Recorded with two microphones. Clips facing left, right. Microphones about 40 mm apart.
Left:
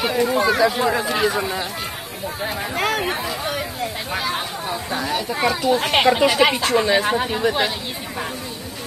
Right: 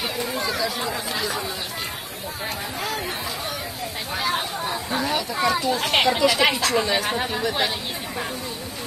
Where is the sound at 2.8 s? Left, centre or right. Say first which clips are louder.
Left 9 dB; left.